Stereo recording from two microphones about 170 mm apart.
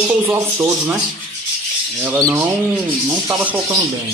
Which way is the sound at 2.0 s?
10° right (ahead or behind).